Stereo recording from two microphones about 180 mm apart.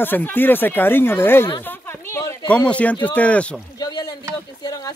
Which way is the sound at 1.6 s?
10° left (ahead or behind).